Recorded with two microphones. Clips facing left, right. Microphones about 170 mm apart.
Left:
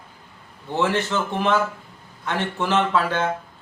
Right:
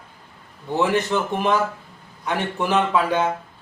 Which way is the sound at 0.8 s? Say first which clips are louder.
Right 2 dB; 15° right (ahead or behind).